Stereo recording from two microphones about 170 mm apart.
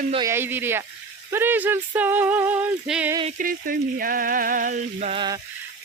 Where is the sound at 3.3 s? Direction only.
55° right (ahead or behind); by 5.2 s 40° right (ahead or behind).